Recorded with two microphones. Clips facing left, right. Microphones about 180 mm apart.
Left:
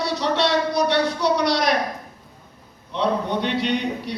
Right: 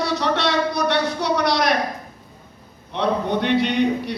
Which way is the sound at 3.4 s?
55° right (ahead or behind).